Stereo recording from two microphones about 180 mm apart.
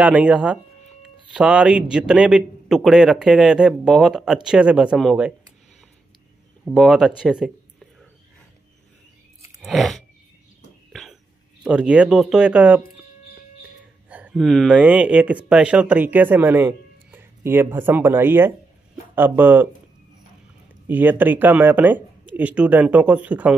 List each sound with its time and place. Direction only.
0.0 s a man's voice: 5° right (ahead or behind)
6.6 s a man's voice: centre (ahead or behind)
9.6 s chewing: centre (ahead or behind)
10.9 s a sound: centre (ahead or behind)
11.6 s a man's voice: 5° right (ahead or behind)
14.0 s speech: 10° right (ahead or behind)
20.8 s speech: 10° right (ahead or behind)